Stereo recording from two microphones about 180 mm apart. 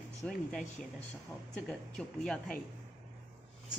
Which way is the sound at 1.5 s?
5° left (ahead or behind).